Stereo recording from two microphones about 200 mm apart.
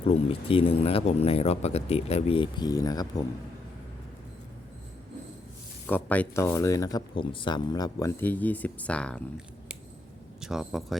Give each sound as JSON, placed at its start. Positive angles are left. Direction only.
{"t": 0.0, "sound": "speech", "side_deg": 30}
{"t": 5.9, "sound": "speech", "side_deg": 10}
{"t": 10.4, "sound": "speech", "side_deg": 0}